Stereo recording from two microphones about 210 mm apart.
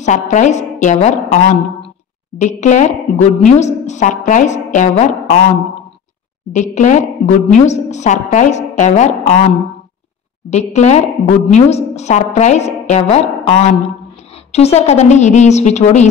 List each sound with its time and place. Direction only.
0.0 s a woman's voice: 35° left (ahead or behind)
6.5 s a woman's voice: 35° left (ahead or behind)
10.5 s a woman's voice: 35° left (ahead or behind)